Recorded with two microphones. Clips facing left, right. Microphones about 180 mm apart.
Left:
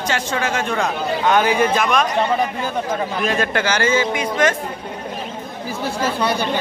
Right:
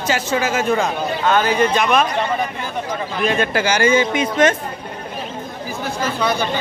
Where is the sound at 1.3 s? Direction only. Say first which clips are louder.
Even; 15° left (ahead or behind).